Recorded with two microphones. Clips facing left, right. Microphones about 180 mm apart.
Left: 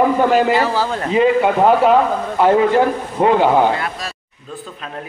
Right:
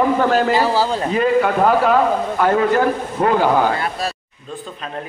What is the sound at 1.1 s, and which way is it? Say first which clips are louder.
A man's voice: left 5 dB; 20° left (ahead or behind).